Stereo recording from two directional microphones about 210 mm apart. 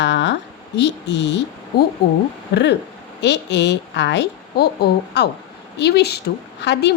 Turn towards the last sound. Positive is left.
turn(degrees=55)  # may be behind; listen again after turning